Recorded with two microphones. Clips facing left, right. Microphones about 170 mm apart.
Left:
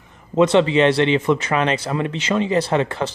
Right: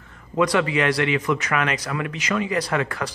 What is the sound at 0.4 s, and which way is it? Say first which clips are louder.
Speech: left 6 dB; 25° left (ahead or behind).